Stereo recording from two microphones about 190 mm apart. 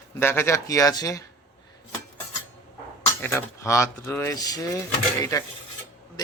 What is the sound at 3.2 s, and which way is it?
Speech, 15° left (ahead or behind).